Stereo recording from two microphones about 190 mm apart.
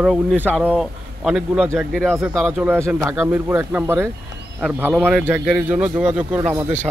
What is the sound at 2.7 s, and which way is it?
Speech, 15° right (ahead or behind).